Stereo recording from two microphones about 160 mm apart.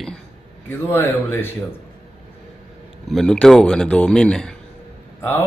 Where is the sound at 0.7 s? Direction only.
15° left (ahead or behind).